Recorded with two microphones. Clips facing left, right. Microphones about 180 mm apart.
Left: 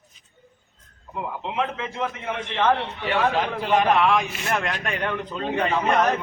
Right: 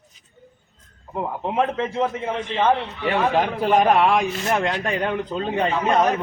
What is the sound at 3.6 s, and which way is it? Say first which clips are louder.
A man's voice: right 2 dB; 35° right (ahead or behind).